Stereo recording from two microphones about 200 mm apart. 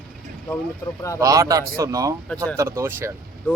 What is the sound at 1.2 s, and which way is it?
A man's voice, 15° right (ahead or behind).